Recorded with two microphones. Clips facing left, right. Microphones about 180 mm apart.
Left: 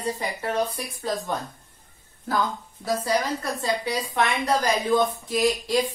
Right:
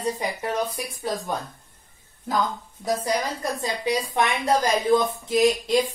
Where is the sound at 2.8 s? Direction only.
15° right (ahead or behind).